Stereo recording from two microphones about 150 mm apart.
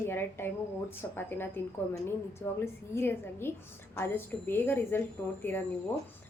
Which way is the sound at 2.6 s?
15° left (ahead or behind).